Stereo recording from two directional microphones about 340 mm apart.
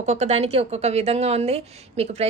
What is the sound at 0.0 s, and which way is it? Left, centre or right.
Speech, centre.